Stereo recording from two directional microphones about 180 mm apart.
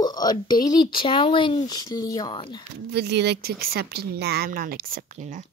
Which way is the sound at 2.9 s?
65° right (ahead or behind).